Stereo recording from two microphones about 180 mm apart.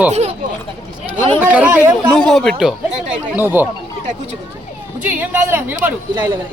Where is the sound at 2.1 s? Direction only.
5° left (ahead or behind).